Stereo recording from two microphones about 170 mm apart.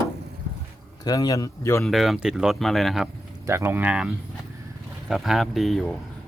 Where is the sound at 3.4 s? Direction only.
15° right (ahead or behind); by 5.9 s centre (ahead or behind).